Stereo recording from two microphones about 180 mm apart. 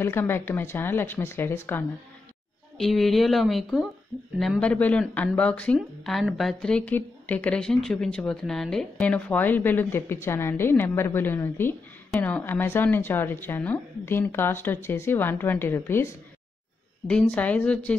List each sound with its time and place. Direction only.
0.0 s a woman's voice: 15° left (ahead or behind)
2.8 s a woman's voice: centre (ahead or behind)